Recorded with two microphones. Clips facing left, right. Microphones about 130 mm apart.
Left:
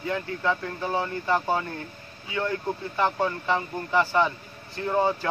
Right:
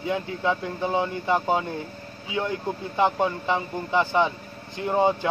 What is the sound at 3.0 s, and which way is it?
Speech, 20° right (ahead or behind).